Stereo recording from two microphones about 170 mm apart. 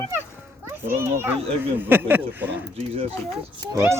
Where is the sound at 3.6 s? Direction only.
15° right (ahead or behind).